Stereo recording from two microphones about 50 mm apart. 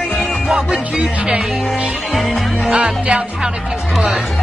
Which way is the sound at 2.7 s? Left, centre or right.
Right.